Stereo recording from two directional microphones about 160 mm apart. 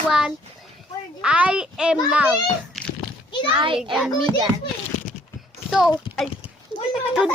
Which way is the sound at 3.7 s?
Centre (ahead or behind).